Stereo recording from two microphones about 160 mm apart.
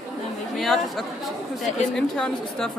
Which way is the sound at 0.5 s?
Centre (ahead or behind).